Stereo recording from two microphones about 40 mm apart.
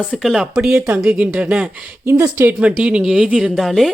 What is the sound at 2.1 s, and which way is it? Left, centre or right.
Speech, right.